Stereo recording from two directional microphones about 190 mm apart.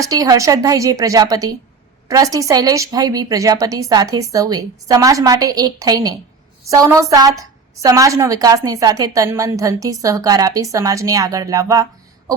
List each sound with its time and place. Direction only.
0.0 s a woman's voice: 20° right (ahead or behind)